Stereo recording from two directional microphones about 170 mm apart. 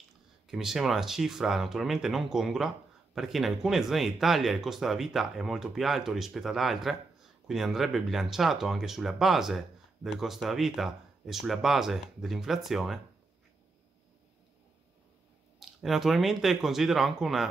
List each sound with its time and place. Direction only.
0.5 s speech: centre (ahead or behind)
15.6 s speech: centre (ahead or behind)